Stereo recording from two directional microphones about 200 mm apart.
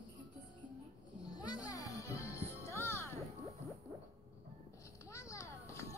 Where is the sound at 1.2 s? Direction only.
20° left (ahead or behind).